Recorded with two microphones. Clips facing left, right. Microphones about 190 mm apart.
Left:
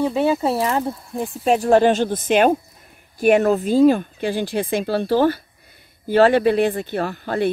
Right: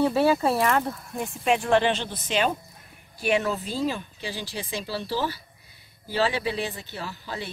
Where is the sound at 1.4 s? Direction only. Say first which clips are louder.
Left 7 dB; 40° left (ahead or behind).